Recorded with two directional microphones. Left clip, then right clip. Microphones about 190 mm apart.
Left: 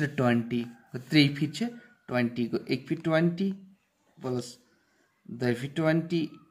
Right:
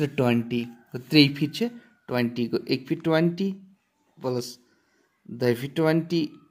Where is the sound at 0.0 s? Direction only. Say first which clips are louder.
Right 3 dB; 20° right (ahead or behind).